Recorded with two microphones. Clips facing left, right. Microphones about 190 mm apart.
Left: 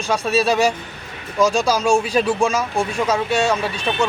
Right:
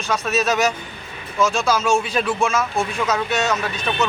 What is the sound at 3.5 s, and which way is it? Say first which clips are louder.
Speech: left 2 dB; 10° left (ahead or behind).